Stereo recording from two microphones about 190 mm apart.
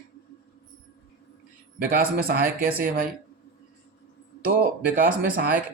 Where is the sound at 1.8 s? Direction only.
50° right (ahead or behind).